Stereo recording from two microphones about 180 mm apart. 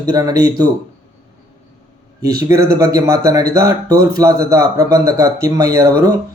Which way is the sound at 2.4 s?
15° right (ahead or behind).